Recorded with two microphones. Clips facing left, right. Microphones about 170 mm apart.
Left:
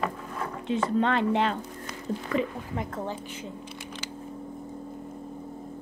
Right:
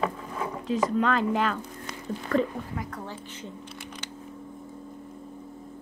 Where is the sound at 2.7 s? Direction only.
25° left (ahead or behind).